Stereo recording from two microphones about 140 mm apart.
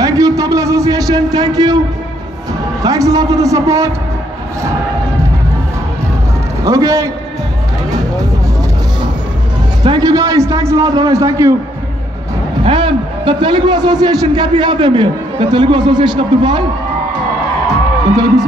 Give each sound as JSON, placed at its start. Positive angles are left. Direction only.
{"t": 0.0, "sound": "a sound", "side_deg": -25}
{"t": 2.8, "sound": "a man's voice", "side_deg": -25}
{"t": 6.6, "sound": "a man's voice", "side_deg": -20}
{"t": 7.9, "sound": "music", "side_deg": -25}
{"t": 9.8, "sound": "a man's voice", "side_deg": -25}
{"t": 12.6, "sound": "a man's voice", "side_deg": -35}
{"t": 18.1, "sound": "a man's voice", "side_deg": -25}